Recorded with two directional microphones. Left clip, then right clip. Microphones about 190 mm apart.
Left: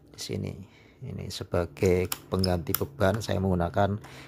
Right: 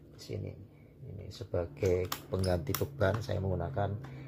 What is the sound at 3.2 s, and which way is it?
Speech, 35° left (ahead or behind).